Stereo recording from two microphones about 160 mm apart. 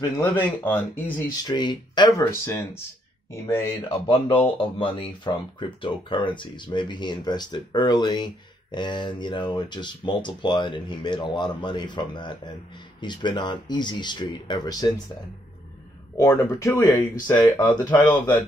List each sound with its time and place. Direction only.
0.2 s speech: 10° left (ahead or behind)
1.5 s speech: 30° left (ahead or behind)
4.1 s speech: 35° left (ahead or behind)
16.2 s speech: 20° left (ahead or behind)